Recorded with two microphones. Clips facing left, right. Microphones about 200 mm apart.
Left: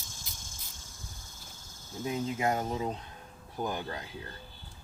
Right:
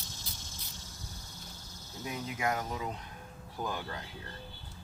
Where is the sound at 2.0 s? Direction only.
25° left (ahead or behind).